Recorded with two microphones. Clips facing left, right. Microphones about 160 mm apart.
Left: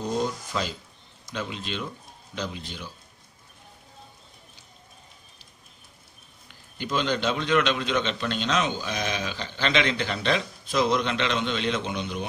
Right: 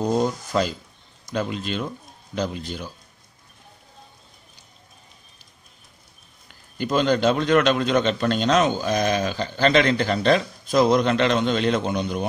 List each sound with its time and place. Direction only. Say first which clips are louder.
0.0 s a man's voice: right 6 dB; 45° right (ahead or behind)
6.8 s a man's voice: right 7 dB; 45° right (ahead or behind)